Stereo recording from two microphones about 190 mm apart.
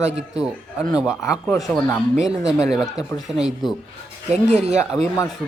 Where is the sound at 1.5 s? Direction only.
5° left (ahead or behind).